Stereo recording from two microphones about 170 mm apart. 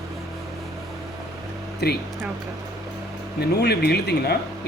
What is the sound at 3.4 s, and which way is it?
Speech, 70° left (ahead or behind).